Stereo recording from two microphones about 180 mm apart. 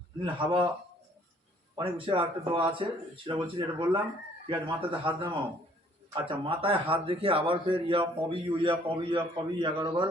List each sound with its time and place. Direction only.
0.2 s a man's voice: 30° right (ahead or behind)
1.7 s a man's voice: 25° right (ahead or behind)